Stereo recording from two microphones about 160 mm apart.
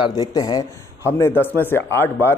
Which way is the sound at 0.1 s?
25° left (ahead or behind).